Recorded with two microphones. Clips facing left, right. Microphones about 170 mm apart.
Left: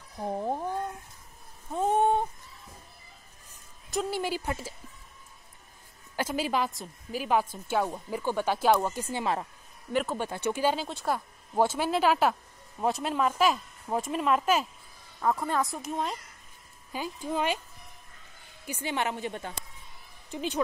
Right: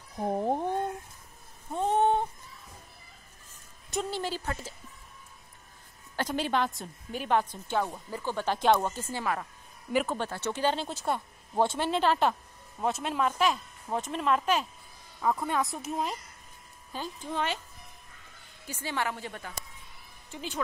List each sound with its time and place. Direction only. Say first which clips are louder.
0.2 s a sound: right 2 dB; 15° right (ahead or behind)
1.7 s a sound: left 1 dB; 5° left (ahead or behind)
4.1 s a woman's voice: left 2 dB; 10° left (ahead or behind)
6.1 s a woman's voice: even; 5° left (ahead or behind)
9.0 s a woman's voice: left 2 dB; 20° left (ahead or behind)
10.1 s a woman's voice: left 2 dB; 10° left (ahead or behind)
10.9 s a woman's voice: left 1 dB; centre (ahead or behind)
16.9 s a woman's voice: left 3 dB; 10° left (ahead or behind)
18.7 s a woman's voice: left 2 dB; 20° left (ahead or behind)